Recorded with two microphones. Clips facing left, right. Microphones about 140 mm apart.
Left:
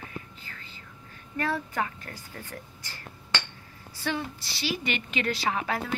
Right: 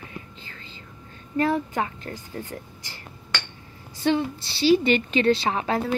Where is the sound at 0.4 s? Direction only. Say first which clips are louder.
Right 3 dB; 30° right (ahead or behind).